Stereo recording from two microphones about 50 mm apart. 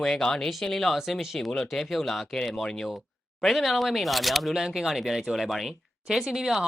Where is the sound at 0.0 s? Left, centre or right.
Centre.